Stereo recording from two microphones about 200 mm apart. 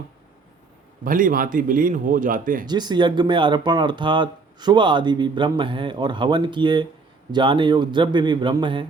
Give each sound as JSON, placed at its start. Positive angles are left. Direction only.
{"t": 1.0, "sound": "speech", "side_deg": -45}
{"t": 2.6, "sound": "speech", "side_deg": -20}